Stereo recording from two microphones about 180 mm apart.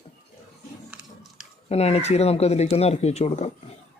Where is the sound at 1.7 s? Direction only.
35° left (ahead or behind).